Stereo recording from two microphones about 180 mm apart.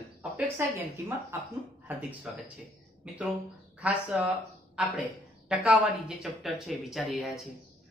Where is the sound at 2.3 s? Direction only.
5° right (ahead or behind).